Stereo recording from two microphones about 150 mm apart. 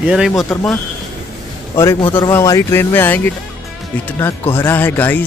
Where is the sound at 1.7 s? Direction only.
20° left (ahead or behind).